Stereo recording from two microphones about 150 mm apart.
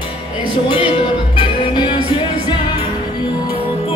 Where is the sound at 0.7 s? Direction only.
35° left (ahead or behind).